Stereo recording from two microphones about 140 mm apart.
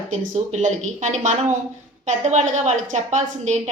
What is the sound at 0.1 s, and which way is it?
A woman's voice, 60° right (ahead or behind).